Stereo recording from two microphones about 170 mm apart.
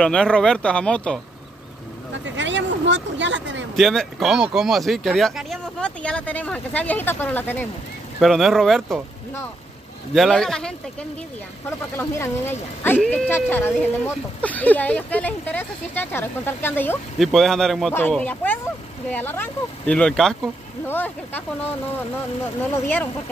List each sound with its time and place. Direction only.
0.0 s speech: 5° left (ahead or behind)
2.2 s speech: 90° right
3.7 s speech: centre (ahead or behind)
8.2 s speech: centre (ahead or behind)
10.1 s speech: centre (ahead or behind)
17.2 s speech: centre (ahead or behind)